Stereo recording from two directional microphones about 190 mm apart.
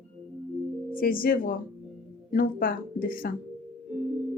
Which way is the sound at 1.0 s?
50° left (ahead or behind).